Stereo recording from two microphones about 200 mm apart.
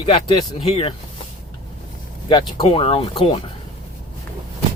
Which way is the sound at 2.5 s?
25° left (ahead or behind).